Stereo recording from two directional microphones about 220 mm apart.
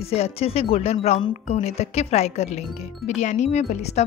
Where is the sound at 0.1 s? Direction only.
25° left (ahead or behind).